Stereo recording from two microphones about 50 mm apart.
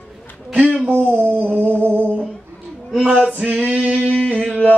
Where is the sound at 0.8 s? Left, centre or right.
Right.